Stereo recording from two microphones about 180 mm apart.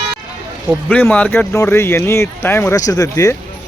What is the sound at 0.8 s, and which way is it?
Speech, 10° left (ahead or behind).